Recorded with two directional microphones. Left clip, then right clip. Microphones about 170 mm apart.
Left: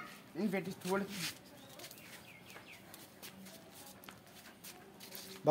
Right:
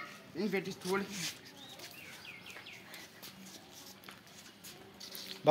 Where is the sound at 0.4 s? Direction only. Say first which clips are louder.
Right 3 dB; 55° left (ahead or behind).